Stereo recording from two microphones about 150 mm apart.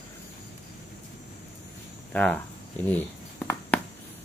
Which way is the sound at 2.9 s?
10° left (ahead or behind).